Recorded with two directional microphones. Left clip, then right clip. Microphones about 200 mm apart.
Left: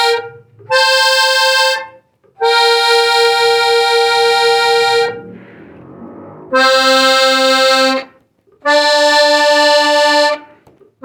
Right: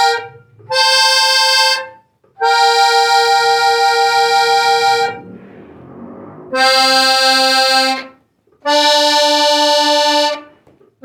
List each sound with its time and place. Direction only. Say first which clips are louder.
0.7 s music: left 1 dB; 35° left (ahead or behind)
6.5 s accordion: left 2 dB; 35° left (ahead or behind)